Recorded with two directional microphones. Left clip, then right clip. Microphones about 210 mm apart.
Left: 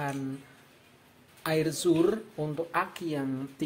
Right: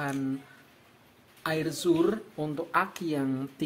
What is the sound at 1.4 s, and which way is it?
Speech, centre (ahead or behind).